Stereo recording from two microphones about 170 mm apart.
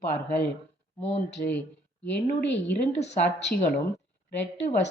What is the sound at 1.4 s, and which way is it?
Speech, 55° left (ahead or behind).